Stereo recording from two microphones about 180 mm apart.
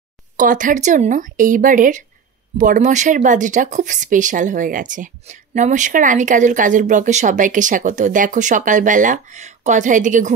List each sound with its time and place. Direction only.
0.4 s speech: 45° right (ahead or behind)